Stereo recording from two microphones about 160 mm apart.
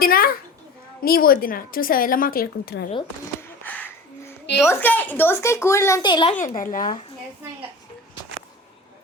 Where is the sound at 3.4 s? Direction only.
10° left (ahead or behind).